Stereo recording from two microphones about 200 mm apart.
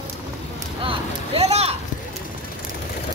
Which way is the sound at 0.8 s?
30° right (ahead or behind).